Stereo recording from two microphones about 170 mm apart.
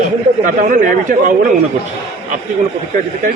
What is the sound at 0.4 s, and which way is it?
Speech, 50° right (ahead or behind).